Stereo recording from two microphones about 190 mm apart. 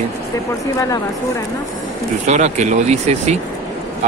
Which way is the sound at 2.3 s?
35° right (ahead or behind).